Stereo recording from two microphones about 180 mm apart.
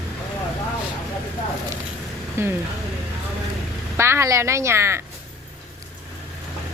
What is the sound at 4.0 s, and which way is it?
A woman's voice, 15° right (ahead or behind).